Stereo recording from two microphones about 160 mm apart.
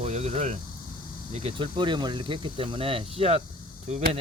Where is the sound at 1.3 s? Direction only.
35° right (ahead or behind).